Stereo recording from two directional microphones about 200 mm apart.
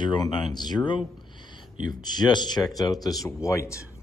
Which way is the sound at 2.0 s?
20° left (ahead or behind).